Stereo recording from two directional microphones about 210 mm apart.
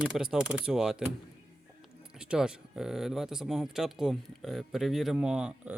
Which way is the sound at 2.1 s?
5° right (ahead or behind).